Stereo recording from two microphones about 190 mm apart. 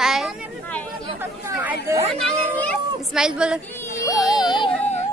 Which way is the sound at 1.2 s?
10° right (ahead or behind).